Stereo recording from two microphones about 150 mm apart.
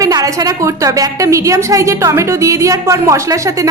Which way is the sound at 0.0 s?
25° right (ahead or behind).